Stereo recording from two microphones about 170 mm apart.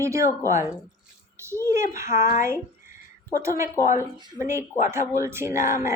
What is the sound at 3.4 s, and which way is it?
A woman's voice, 15° right (ahead or behind).